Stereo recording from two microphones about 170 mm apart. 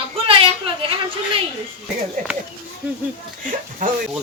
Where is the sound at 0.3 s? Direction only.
30° right (ahead or behind).